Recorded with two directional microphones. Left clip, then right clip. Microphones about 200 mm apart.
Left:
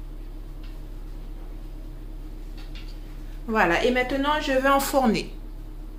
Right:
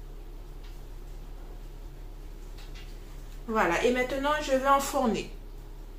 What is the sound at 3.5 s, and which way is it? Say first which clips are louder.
Speech: left 4 dB; 45° left (ahead or behind).